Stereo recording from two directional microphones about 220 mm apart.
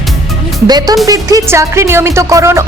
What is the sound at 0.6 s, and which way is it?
Speech, 15° right (ahead or behind).